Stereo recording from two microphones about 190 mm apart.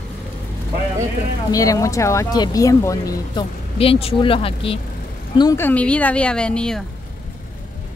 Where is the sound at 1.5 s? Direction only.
20° left (ahead or behind).